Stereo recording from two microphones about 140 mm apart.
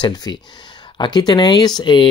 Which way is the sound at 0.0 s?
30° left (ahead or behind).